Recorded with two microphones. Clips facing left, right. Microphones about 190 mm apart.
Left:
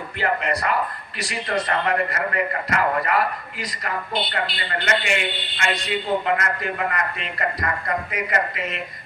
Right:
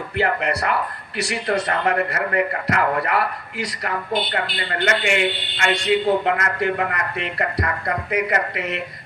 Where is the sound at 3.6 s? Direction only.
75° right (ahead or behind).